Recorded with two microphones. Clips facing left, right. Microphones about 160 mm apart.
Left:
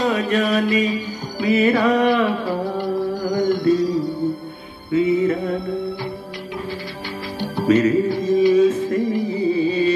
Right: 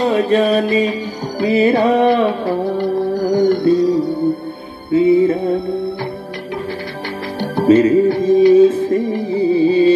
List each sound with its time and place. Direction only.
0.0 s mantra: 30° right (ahead or behind)
2.4 s music: 55° right (ahead or behind)
4.9 s mantra: 30° right (ahead or behind)
7.6 s music: 30° right (ahead or behind)
8.1 s music: 60° right (ahead or behind)
8.5 s music: 30° right (ahead or behind)